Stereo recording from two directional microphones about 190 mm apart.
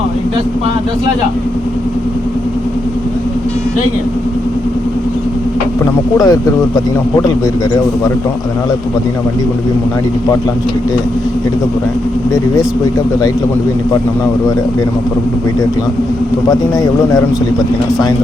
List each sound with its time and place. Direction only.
5.8 s speech: 20° left (ahead or behind)
16.5 s speech: 20° left (ahead or behind)